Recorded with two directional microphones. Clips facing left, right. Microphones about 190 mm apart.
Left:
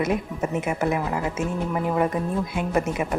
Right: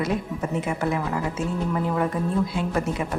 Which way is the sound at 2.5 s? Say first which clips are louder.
Left 1 dB; 20° left (ahead or behind).